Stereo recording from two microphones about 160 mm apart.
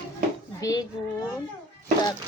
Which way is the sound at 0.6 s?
20° left (ahead or behind).